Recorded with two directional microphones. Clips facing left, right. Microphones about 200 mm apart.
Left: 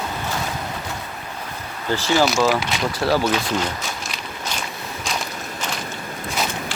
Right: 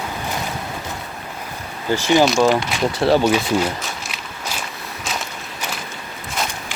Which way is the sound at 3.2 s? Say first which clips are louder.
Right 4 dB; 10° right (ahead or behind).